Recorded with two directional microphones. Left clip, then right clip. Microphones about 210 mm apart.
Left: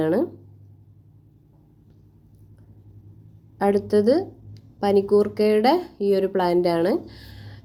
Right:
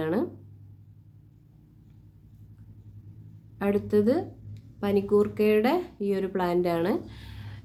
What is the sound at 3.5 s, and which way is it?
A woman's voice, 20° left (ahead or behind).